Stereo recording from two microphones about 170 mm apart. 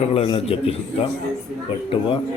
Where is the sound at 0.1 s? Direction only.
35° left (ahead or behind).